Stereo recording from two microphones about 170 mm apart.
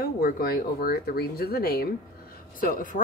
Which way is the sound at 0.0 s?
60° left (ahead or behind).